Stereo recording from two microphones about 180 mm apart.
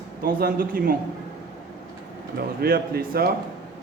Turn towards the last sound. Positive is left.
turn(degrees=-60)  # may be behind; listen again after turning